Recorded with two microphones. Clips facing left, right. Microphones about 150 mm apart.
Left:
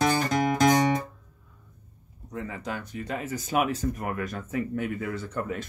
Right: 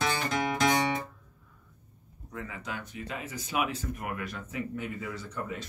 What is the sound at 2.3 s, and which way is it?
Speech, 30° left (ahead or behind).